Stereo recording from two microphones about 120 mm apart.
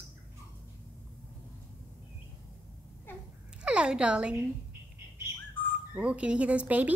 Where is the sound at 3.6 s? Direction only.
10° right (ahead or behind).